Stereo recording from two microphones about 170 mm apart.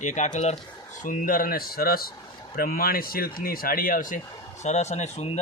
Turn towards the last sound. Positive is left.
turn(degrees=40)  # may be behind; listen again after turning